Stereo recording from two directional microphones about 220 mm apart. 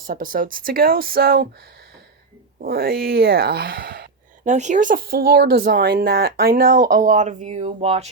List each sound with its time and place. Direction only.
0.0 s speech: 40° right (ahead or behind)
2.6 s speech: 45° right (ahead or behind); by 8.1 s 30° right (ahead or behind)